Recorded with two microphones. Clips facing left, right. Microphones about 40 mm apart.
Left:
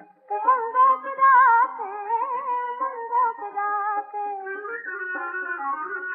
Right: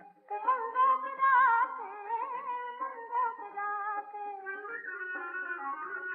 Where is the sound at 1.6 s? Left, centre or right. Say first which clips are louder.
Left 9 dB; left.